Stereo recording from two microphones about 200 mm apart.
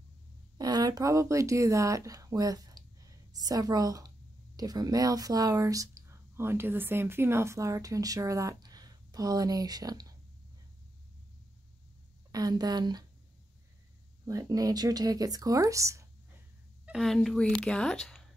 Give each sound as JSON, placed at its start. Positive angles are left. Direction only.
{"t": 0.6, "sound": "speech", "side_deg": -20}
{"t": 12.3, "sound": "a woman's voice", "side_deg": -20}
{"t": 14.2, "sound": "speech", "side_deg": -15}
{"t": 16.8, "sound": "speech", "side_deg": 0}